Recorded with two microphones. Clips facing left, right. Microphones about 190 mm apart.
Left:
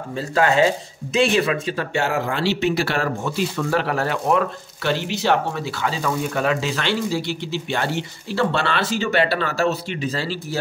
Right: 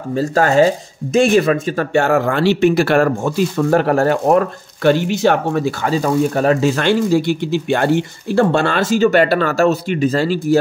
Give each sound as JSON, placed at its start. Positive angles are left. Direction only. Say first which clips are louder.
{"t": 0.1, "sound": "speech", "louder": "right 5 dB", "side_deg": -40}